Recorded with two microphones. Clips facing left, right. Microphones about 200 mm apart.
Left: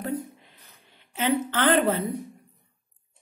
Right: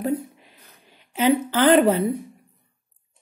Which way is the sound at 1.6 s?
10° right (ahead or behind).